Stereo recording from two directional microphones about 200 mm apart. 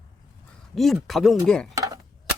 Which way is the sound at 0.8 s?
Centre (ahead or behind).